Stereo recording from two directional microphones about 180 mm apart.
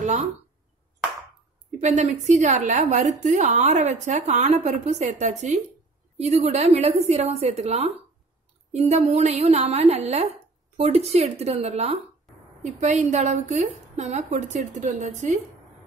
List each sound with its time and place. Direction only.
0.0 s speech: 40° right (ahead or behind)
1.8 s a woman's voice: 40° right (ahead or behind)